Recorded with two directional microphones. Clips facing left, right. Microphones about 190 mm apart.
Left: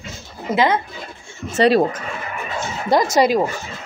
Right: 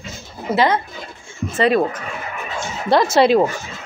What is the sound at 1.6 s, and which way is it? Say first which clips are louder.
Speech: left 2 dB; 35° left (ahead or behind).